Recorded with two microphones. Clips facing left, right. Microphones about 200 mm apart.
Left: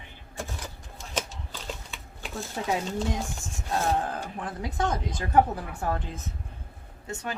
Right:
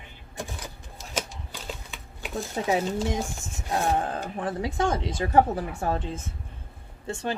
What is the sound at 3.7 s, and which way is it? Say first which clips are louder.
Speech: right 1 dB; 25° right (ahead or behind).